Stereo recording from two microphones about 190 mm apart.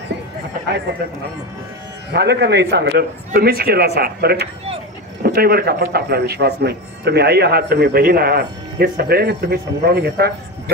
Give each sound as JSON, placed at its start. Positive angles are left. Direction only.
{"t": 2.1, "sound": "a man's voice", "side_deg": -60}